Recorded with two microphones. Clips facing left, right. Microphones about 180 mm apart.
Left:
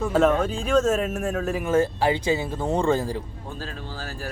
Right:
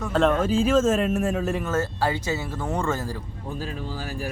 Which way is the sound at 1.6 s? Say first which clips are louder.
Left 4 dB; 15° left (ahead or behind).